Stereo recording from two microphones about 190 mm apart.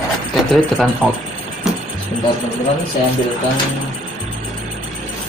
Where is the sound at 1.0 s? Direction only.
5° left (ahead or behind).